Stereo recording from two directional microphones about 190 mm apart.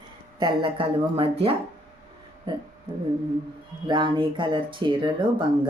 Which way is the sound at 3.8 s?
25° right (ahead or behind).